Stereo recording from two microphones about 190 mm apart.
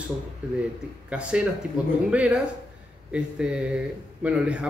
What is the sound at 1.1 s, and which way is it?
Speech, 5° right (ahead or behind).